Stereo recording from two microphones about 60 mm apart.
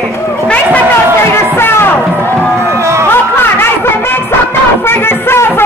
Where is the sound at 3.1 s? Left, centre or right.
Left.